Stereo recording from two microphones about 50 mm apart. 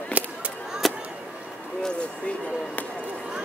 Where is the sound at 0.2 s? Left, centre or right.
Right.